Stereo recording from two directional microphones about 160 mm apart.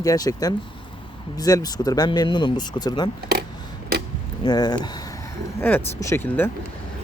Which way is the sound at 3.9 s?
75° right (ahead or behind).